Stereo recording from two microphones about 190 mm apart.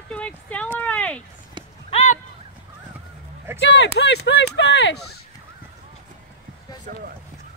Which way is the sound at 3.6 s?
65° left (ahead or behind).